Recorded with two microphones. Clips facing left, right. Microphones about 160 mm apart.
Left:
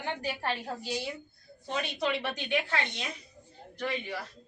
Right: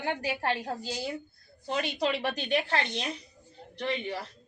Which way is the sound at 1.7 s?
35° right (ahead or behind).